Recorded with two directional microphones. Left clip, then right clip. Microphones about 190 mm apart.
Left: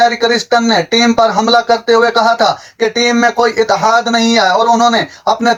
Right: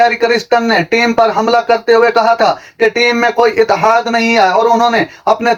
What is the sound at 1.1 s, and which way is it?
Speech, 25° right (ahead or behind).